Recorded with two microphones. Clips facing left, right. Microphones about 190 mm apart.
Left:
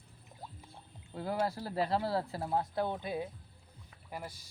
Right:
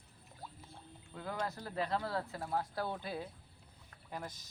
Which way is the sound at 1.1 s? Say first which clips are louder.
Left 6 dB; 30° left (ahead or behind).